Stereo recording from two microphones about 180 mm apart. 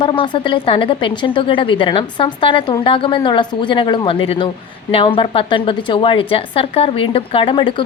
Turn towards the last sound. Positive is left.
turn(degrees=30)  # may be behind; listen again after turning